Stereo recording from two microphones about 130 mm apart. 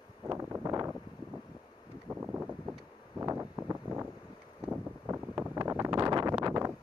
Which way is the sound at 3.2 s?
20° right (ahead or behind).